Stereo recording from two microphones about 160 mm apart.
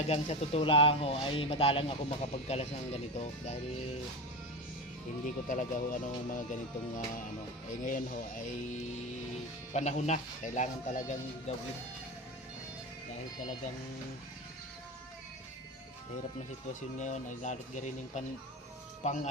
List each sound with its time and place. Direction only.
0.1 s speech: 40° left (ahead or behind)
5.2 s speech: 55° left (ahead or behind)
9.7 s speech: 45° left (ahead or behind)
17.0 s speech: 50° left (ahead or behind)